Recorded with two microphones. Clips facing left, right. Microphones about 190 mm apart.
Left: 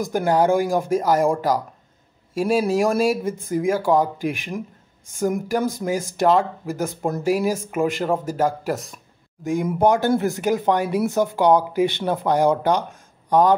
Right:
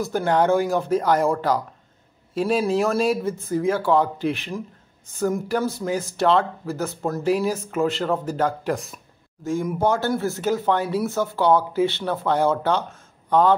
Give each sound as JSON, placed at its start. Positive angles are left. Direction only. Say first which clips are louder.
{"t": 0.0, "sound": "a man's voice", "louder": "left 1 dB", "side_deg": 10}
{"t": 9.4, "sound": "a man's voice", "louder": "left 3 dB", "side_deg": 15}